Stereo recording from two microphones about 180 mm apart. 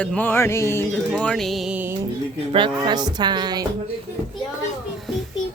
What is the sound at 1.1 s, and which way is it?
Speech, 5° left (ahead or behind).